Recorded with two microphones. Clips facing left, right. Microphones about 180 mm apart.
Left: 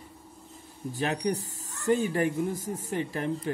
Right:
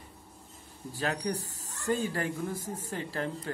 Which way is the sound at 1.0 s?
20° left (ahead or behind).